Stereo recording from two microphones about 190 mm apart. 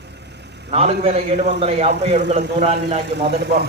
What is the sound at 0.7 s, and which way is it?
A man's voice, 30° right (ahead or behind).